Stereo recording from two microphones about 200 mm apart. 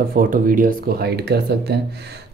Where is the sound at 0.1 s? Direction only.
45° right (ahead or behind).